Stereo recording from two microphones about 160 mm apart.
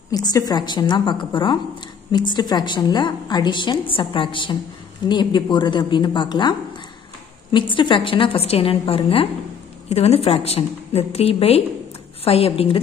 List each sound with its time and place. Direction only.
0.1 s a woman's voice: 25° left (ahead or behind)
7.5 s a woman's voice: 30° left (ahead or behind)